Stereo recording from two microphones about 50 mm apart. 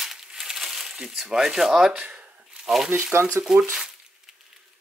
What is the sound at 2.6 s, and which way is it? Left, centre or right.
Speech, centre.